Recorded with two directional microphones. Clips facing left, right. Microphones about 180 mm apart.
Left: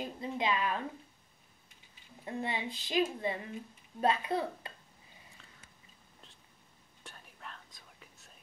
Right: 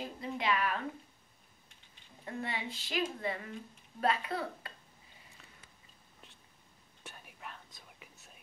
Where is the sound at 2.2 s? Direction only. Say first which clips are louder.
Left 2 dB; 20° left (ahead or behind).